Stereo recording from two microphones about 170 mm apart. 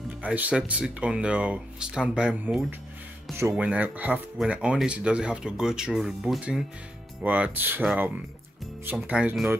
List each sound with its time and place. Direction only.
0.2 s speech: 5° right (ahead or behind)